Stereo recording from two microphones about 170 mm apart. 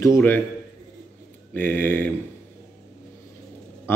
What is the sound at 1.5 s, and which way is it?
Speech, 10° left (ahead or behind).